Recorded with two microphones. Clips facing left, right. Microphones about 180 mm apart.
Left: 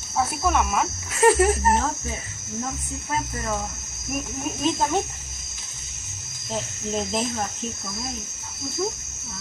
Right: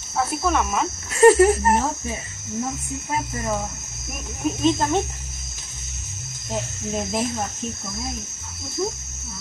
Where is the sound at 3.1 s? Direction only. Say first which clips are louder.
Right 2 dB; 15° right (ahead or behind).